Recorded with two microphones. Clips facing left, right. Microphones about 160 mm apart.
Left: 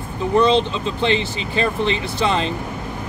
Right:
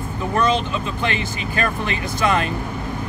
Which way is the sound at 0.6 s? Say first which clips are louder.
Left 4 dB; 25° left (ahead or behind).